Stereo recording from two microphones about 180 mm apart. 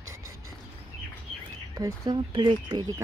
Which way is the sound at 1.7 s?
20° right (ahead or behind).